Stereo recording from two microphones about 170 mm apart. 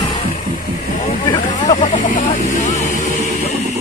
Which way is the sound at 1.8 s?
50° left (ahead or behind).